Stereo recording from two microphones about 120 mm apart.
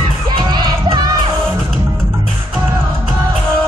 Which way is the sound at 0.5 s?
35° right (ahead or behind).